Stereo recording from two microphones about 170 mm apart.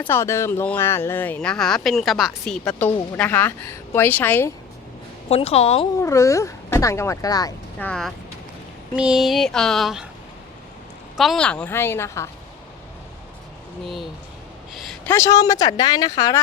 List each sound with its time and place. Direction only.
0.0 s speech: 15° left (ahead or behind)
5.3 s a woman's voice: 35° left (ahead or behind)
6.0 s speech: 15° left (ahead or behind)
7.8 s a sound: 5° left (ahead or behind)
11.2 s speech: 5° left (ahead or behind)
13.8 s a sound: centre (ahead or behind)
15.1 s speech: 20° left (ahead or behind)